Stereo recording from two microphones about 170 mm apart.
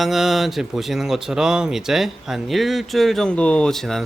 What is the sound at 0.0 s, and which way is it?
Speech, centre (ahead or behind).